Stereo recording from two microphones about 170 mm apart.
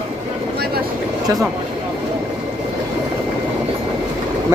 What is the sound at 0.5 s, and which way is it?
Vehicle, 70° right (ahead or behind).